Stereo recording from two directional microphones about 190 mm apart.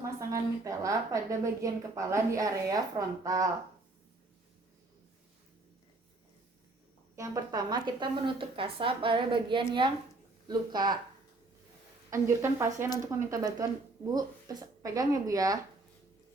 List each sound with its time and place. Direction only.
0.0 s a woman's voice: 15° right (ahead or behind)
7.2 s speech: 20° right (ahead or behind)
12.1 s a woman's voice: 15° right (ahead or behind)